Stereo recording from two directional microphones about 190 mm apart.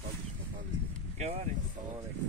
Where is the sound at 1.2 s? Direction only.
35° right (ahead or behind).